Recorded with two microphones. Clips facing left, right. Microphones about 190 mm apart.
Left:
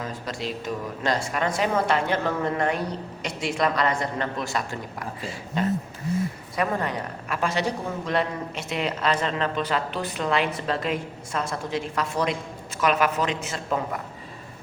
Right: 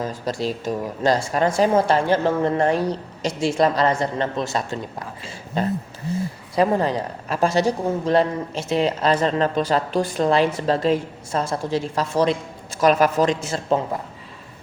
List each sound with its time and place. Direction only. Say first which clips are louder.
0.0 s a woman's voice: right 6 dB; 35° right (ahead or behind)